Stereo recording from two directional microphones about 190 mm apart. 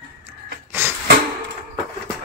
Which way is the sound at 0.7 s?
10° right (ahead or behind).